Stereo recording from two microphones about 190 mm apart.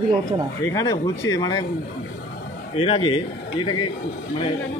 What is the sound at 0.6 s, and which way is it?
Speech, 20° left (ahead or behind).